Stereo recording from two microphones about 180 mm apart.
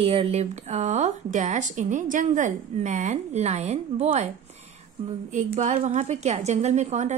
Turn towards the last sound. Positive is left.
turn(degrees=-40)  # may be behind; listen again after turning